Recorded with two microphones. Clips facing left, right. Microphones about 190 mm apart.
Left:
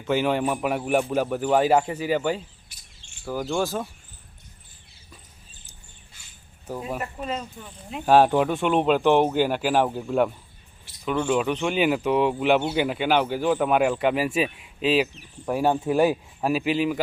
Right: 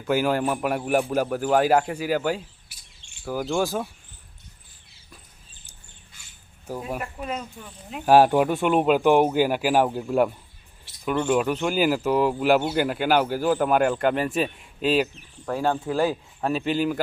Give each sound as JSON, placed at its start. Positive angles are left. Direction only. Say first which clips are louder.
{"t": 0.1, "sound": "speech", "louder": "even", "side_deg": -5}
{"t": 6.7, "sound": "speech", "louder": "even", "side_deg": -5}
{"t": 15.4, "sound": "speech", "louder": "left 2 dB", "side_deg": 15}
{"t": 16.5, "sound": "speech", "louder": "left 1 dB", "side_deg": 5}